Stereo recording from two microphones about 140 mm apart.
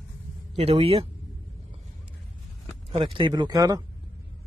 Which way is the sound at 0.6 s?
45° right (ahead or behind).